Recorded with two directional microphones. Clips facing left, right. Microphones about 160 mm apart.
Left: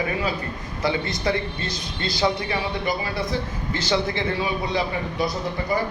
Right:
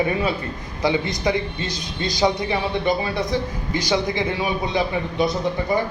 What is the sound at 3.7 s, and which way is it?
A man's voice, 15° right (ahead or behind).